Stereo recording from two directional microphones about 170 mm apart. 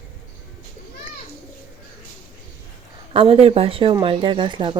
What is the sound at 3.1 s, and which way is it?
Speech, 35° right (ahead or behind).